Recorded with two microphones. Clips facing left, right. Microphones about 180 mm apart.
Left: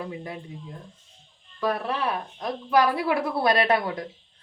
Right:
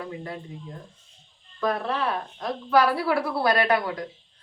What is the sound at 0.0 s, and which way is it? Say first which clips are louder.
Speech: even; 15° left (ahead or behind).